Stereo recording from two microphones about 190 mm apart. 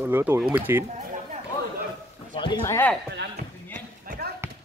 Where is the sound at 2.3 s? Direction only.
25° left (ahead or behind).